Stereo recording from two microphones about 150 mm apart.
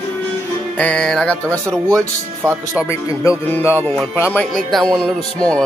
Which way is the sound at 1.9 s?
20° right (ahead or behind).